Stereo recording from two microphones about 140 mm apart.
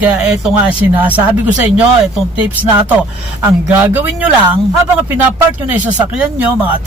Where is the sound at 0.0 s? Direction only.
10° right (ahead or behind).